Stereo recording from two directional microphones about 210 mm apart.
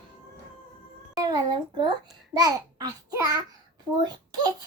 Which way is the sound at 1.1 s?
20° right (ahead or behind).